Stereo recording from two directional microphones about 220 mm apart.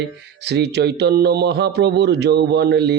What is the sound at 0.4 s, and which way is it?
A man's voice, 50° right (ahead or behind).